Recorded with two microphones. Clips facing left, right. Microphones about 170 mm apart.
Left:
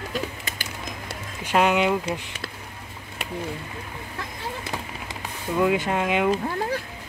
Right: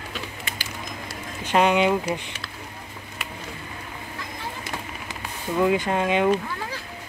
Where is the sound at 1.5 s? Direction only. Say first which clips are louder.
Right 1 dB; 5° left (ahead or behind).